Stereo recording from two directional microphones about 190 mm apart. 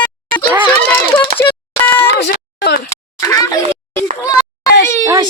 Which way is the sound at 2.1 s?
60° left (ahead or behind).